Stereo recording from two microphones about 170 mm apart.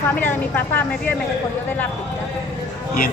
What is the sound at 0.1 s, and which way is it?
Speech, 10° left (ahead or behind).